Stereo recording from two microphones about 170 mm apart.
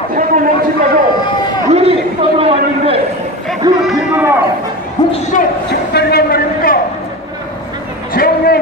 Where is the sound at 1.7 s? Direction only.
35° right (ahead or behind).